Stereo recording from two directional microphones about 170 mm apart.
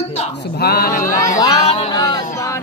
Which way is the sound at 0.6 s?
65° left (ahead or behind).